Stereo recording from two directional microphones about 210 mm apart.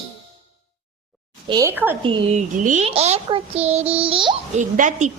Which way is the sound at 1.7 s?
10° right (ahead or behind).